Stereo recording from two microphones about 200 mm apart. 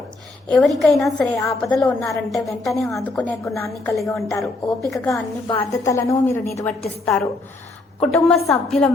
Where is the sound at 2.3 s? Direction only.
Centre (ahead or behind).